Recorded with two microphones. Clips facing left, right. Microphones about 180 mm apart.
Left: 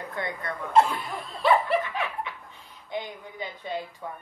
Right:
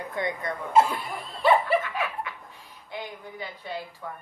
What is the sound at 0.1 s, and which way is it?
Speech, 15° right (ahead or behind).